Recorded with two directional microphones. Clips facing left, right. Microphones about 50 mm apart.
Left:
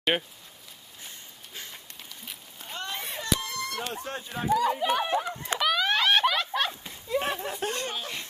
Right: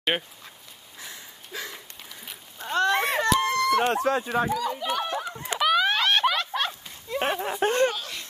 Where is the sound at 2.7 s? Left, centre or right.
Right.